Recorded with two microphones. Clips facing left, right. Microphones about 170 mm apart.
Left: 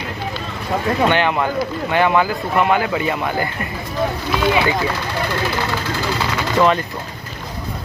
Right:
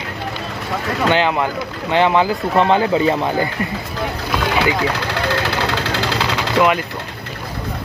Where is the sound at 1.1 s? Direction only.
20° right (ahead or behind).